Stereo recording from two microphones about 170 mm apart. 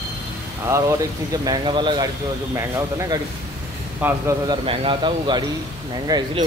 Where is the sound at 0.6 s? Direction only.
15° right (ahead or behind).